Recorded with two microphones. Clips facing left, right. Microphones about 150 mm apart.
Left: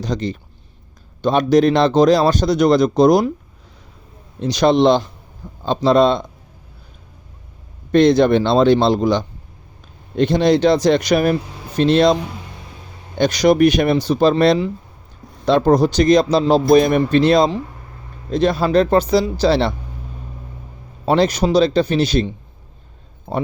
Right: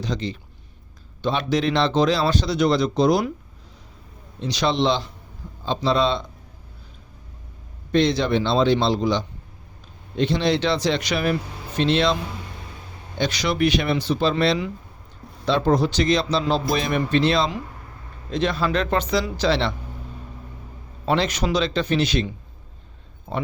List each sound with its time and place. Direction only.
0.0 s speech: 45° left (ahead or behind)
4.4 s speech: 45° left (ahead or behind)
7.9 s speech: 50° left (ahead or behind)
13.1 s speech: 45° left (ahead or behind)
21.0 s speech: 35° left (ahead or behind)
23.3 s speech: 35° left (ahead or behind)